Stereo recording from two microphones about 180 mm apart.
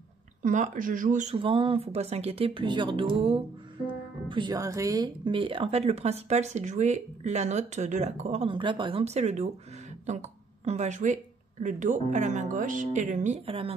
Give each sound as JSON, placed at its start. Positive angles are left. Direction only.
{"t": 0.4, "sound": "speech", "side_deg": -45}